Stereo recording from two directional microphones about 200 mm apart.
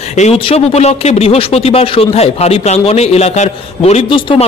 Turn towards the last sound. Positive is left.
turn(degrees=25)  # may be behind; listen again after turning